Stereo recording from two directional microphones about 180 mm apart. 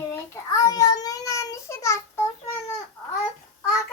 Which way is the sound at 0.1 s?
20° left (ahead or behind).